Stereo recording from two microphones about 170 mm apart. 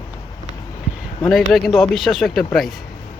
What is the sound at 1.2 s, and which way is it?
Speech, centre (ahead or behind).